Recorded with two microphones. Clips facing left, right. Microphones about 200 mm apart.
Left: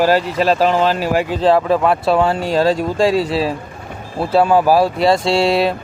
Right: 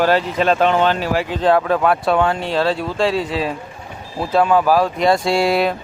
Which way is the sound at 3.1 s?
35° left (ahead or behind).